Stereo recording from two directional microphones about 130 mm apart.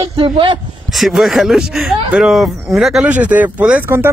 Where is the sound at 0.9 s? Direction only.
Centre (ahead or behind).